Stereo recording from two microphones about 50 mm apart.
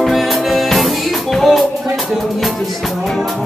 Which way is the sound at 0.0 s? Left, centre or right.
Centre.